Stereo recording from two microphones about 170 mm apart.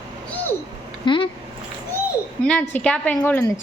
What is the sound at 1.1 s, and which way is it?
Speech, 30° left (ahead or behind).